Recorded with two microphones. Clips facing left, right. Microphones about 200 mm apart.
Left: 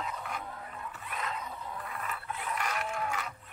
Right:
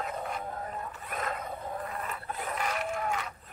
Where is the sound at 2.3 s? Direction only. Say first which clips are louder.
Right 2 dB; 40° right (ahead or behind).